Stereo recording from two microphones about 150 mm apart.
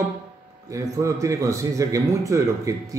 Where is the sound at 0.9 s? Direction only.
20° right (ahead or behind).